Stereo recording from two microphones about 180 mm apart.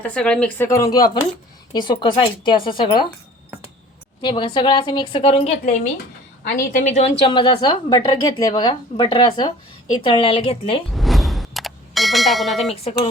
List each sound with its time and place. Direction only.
0.1 s a woman's voice: 5° left (ahead or behind); by 3.1 s 25° left (ahead or behind)
4.2 s a woman's voice: 25° left (ahead or behind)
10.9 s a sound: centre (ahead or behind)
12.8 s speech: 30° left (ahead or behind)